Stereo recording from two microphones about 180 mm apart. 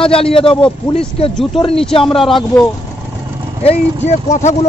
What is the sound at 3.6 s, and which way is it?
Speech, 35° left (ahead or behind).